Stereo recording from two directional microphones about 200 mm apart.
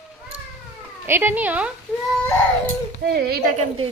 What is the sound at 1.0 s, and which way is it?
Speech, 10° right (ahead or behind).